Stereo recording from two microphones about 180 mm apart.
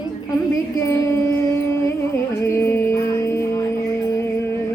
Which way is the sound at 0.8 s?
15° left (ahead or behind).